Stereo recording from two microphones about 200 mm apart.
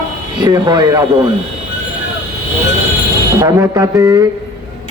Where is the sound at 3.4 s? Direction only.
15° right (ahead or behind).